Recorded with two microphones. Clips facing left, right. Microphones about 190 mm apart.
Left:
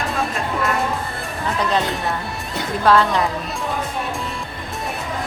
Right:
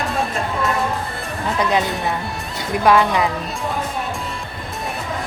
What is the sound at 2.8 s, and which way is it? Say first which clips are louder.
Speech: right 1 dB; 15° right (ahead or behind).